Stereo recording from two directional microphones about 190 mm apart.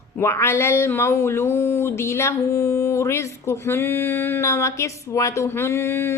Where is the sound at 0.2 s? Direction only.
15° left (ahead or behind).